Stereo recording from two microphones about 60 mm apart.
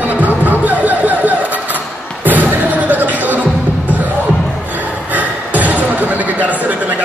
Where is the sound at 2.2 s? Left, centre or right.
Right.